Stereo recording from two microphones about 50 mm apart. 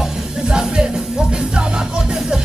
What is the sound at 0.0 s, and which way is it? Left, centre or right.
Music, centre.